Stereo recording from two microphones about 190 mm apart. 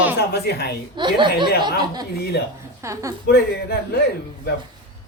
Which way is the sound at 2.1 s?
55° left (ahead or behind).